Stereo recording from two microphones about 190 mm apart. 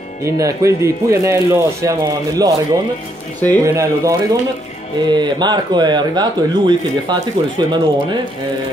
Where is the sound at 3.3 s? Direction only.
10° left (ahead or behind).